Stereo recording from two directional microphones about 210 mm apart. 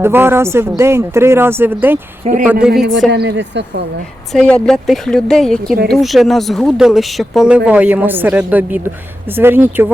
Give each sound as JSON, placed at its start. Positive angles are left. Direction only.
{"t": 0.0, "sound": "a woman's voice", "side_deg": -10}
{"t": 3.1, "sound": "a woman's voice", "side_deg": -55}
{"t": 4.3, "sound": "speech", "side_deg": 0}